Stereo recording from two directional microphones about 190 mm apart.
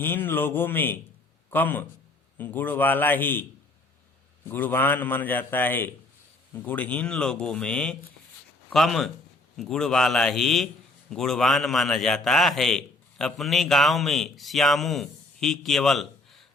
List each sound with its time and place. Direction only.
0.0 s a man's voice: 10° left (ahead or behind)
4.4 s a man's voice: 10° left (ahead or behind)